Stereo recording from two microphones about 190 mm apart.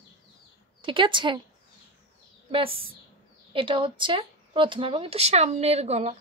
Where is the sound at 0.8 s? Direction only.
25° right (ahead or behind).